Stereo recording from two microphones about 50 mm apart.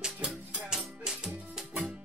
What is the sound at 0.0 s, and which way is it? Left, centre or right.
Music, centre.